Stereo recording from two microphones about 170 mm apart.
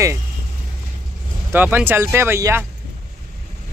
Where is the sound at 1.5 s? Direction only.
10° right (ahead or behind).